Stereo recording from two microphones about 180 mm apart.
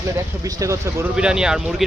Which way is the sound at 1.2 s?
5° right (ahead or behind).